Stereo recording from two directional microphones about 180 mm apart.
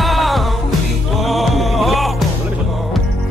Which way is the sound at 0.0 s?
Centre (ahead or behind).